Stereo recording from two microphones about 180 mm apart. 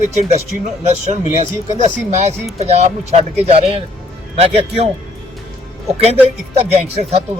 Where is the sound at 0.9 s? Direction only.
40° right (ahead or behind).